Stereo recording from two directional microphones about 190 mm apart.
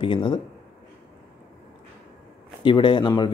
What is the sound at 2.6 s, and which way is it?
Speech, 25° left (ahead or behind).